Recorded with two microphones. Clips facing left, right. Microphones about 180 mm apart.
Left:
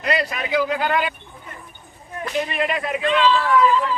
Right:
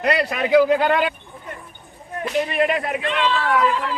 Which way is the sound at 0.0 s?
60° right (ahead or behind).